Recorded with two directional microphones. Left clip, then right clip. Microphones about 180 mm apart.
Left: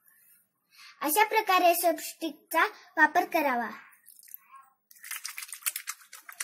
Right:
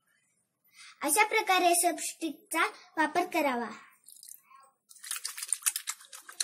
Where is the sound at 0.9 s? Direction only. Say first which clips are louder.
Left 2 dB; 55° left (ahead or behind).